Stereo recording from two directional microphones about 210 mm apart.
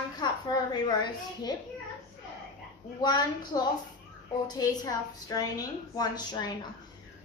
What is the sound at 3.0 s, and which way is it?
A woman's voice, 20° left (ahead or behind).